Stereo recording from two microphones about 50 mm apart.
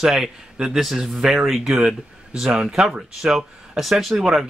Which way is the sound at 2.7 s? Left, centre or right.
Centre.